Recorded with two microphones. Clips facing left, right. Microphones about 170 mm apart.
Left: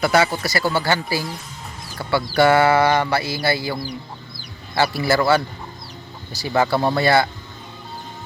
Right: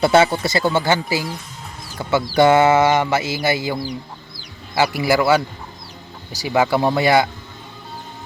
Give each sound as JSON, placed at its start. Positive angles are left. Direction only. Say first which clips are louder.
{"t": 0.0, "sound": "speech", "louder": "right 4 dB", "side_deg": -25}
{"t": 6.4, "sound": "speech", "louder": "right 2 dB", "side_deg": -15}